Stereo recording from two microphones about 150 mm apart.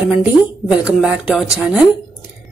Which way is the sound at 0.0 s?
5° right (ahead or behind).